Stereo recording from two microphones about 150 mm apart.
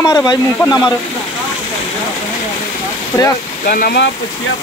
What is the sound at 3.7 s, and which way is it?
Speech, 75° left (ahead or behind).